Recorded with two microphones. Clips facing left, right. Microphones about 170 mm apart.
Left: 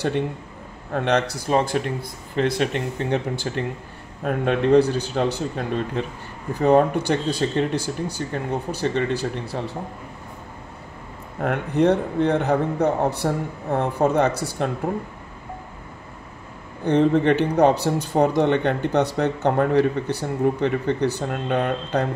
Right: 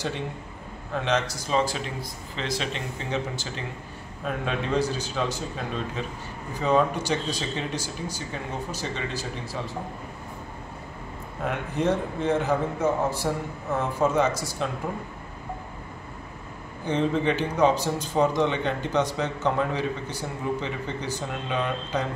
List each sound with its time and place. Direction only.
0.9 s a man's voice: 60° left (ahead or behind)
11.4 s a man's voice: 60° left (ahead or behind)
16.8 s a man's voice: 60° left (ahead or behind)